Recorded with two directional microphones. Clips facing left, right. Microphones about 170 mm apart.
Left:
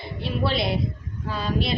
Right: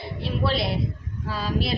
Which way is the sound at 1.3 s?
5° right (ahead or behind).